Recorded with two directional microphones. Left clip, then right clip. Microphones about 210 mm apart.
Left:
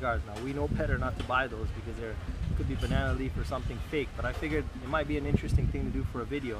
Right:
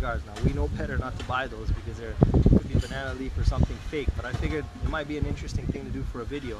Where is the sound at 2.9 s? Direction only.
Centre (ahead or behind).